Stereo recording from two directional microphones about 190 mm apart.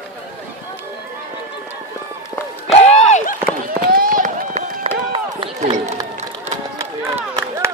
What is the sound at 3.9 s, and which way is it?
Run, 45° right (ahead or behind).